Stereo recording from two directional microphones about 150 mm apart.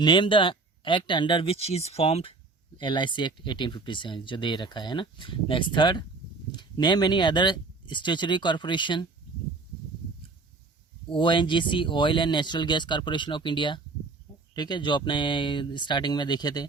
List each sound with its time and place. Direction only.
0.0 s speech: 30° left (ahead or behind)
2.7 s speech: 30° left (ahead or behind)
11.1 s speech: 35° left (ahead or behind)